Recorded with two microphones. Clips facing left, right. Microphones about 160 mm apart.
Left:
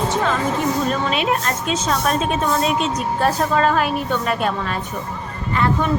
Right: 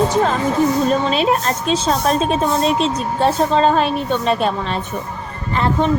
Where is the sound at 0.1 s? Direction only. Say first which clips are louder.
Right 4 dB; 35° right (ahead or behind).